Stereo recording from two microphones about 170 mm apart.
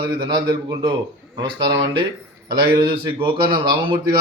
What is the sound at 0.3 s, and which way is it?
Speech, 25° right (ahead or behind).